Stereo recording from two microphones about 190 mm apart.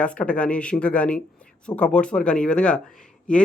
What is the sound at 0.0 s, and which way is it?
Speech, 5° left (ahead or behind).